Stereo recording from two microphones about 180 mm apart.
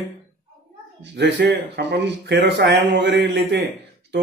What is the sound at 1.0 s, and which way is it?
Speech, 75° right (ahead or behind).